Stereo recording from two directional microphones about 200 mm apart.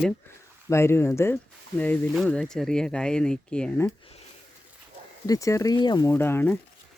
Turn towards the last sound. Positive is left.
turn(degrees=10)  # may be behind; listen again after turning